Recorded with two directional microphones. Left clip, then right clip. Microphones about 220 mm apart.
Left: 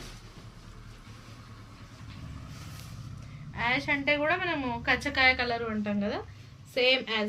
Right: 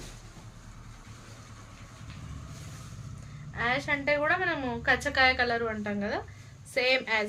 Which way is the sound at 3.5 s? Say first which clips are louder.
Even; 10° right (ahead or behind).